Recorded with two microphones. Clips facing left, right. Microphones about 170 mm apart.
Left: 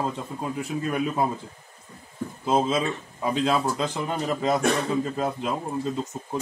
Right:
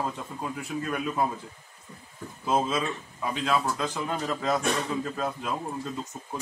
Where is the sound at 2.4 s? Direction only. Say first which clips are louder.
Left 3 dB; 25° left (ahead or behind).